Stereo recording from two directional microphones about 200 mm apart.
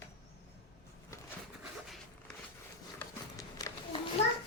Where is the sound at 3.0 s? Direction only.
15° left (ahead or behind).